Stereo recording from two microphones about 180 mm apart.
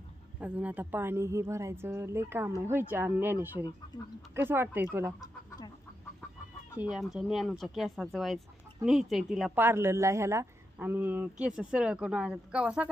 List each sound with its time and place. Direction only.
0.4 s a woman's voice: 5° right (ahead or behind)
3.9 s speech: 25° left (ahead or behind)
4.4 s a woman's voice: 10° right (ahead or behind)
6.8 s a woman's voice: centre (ahead or behind)